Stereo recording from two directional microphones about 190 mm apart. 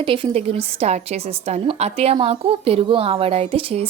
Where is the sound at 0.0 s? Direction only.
25° right (ahead or behind).